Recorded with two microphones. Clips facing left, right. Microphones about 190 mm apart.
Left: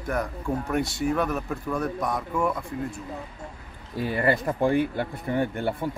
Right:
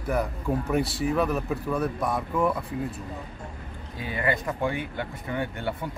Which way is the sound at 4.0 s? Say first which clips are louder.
Left 4 dB; 40° left (ahead or behind).